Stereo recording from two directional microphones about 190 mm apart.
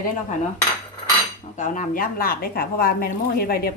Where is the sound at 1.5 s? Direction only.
40° left (ahead or behind).